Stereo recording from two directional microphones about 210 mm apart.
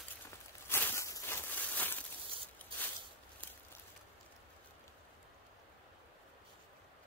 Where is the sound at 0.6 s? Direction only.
10° left (ahead or behind).